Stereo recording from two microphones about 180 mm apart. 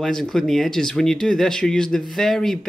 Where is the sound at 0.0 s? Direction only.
Centre (ahead or behind).